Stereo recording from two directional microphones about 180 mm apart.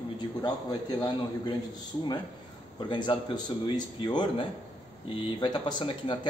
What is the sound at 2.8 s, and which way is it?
Speech, 25° left (ahead or behind).